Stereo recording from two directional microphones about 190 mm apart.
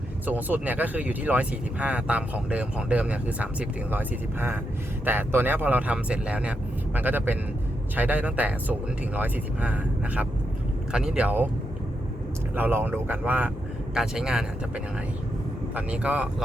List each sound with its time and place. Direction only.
0.3 s speech: 10° right (ahead or behind)
12.5 s speech: 10° right (ahead or behind)
15.7 s speech: 5° right (ahead or behind)